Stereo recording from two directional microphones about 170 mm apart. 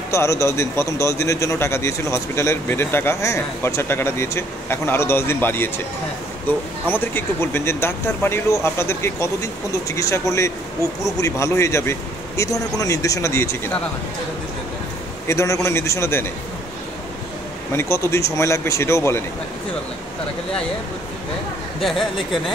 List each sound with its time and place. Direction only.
0.1 s a man's voice: 15° left (ahead or behind)
6.9 s a man's voice: 10° left (ahead or behind)
15.2 s a man's voice: 20° left (ahead or behind)
17.7 s a man's voice: 15° left (ahead or behind)
21.7 s speech: centre (ahead or behind)